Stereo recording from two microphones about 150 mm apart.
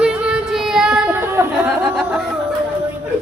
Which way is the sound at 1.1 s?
15° right (ahead or behind).